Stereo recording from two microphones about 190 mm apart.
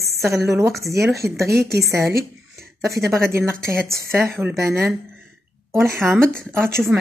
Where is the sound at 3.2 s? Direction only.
15° right (ahead or behind).